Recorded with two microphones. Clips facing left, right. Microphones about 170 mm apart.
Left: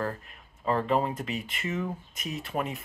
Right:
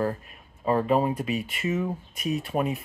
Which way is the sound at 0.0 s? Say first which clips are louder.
Right 5 dB; 15° right (ahead or behind).